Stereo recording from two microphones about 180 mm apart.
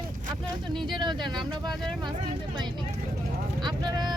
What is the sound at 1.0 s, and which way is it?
Speech, 25° right (ahead or behind).